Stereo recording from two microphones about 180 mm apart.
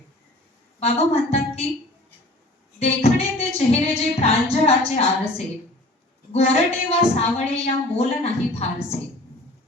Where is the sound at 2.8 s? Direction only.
35° left (ahead or behind).